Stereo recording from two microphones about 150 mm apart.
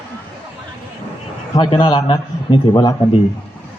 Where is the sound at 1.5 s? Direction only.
35° left (ahead or behind).